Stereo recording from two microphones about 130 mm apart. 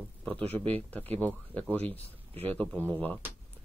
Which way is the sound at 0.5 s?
15° left (ahead or behind).